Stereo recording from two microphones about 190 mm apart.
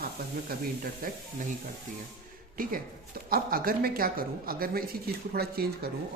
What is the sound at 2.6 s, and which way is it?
Speech, 50° right (ahead or behind).